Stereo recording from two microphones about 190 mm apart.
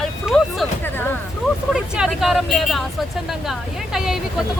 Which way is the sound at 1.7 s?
5° right (ahead or behind).